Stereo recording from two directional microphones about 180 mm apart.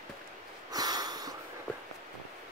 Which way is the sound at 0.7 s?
20° right (ahead or behind).